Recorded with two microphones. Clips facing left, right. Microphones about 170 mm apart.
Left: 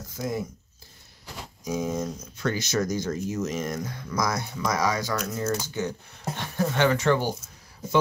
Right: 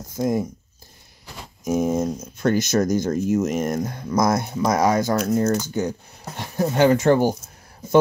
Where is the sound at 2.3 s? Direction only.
45° right (ahead or behind).